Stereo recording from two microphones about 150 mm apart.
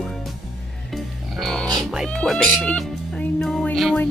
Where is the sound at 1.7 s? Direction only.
Centre (ahead or behind).